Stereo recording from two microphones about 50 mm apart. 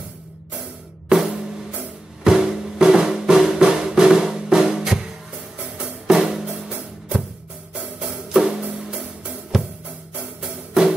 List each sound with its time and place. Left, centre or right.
1.1 s music: centre
6.0 s drum: centre
8.0 s music: centre
9.5 s drum kit: centre
10.7 s music: centre